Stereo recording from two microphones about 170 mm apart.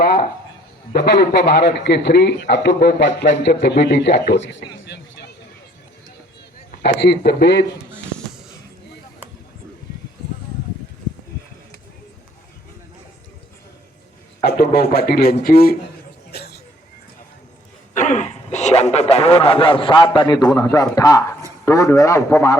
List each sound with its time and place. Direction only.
0.0 s a sound: 65° left (ahead or behind)
0.9 s a man's voice: 70° left (ahead or behind); by 4.6 s 90° left
6.8 s a man's voice: 90° left
14.4 s speech: 70° left (ahead or behind)
16.3 s a sound: 75° left (ahead or behind)
17.9 s a man's voice: 45° left (ahead or behind); by 22.5 s 20° left (ahead or behind)